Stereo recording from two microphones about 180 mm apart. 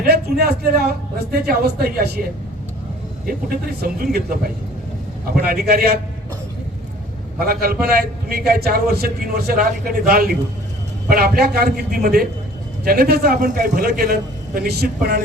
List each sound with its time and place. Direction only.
0.0 s a man's voice: 60° right (ahead or behind)
3.2 s a man's voice: 55° right (ahead or behind)
7.3 s a man's voice: 55° right (ahead or behind)